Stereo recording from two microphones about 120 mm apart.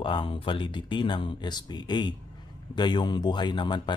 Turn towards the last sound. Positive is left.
turn(degrees=40)  # may be behind; listen again after turning